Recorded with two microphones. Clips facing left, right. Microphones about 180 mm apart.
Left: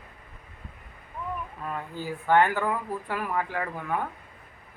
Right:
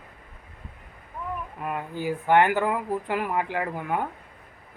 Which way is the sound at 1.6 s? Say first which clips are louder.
Right 4 dB; 15° right (ahead or behind).